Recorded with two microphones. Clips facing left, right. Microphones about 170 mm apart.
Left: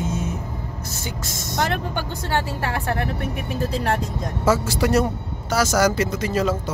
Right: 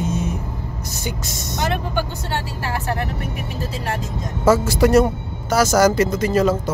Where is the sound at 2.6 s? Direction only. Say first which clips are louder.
Even; 55° left (ahead or behind).